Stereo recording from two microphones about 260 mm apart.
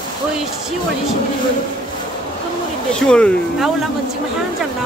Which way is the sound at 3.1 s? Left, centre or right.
Centre.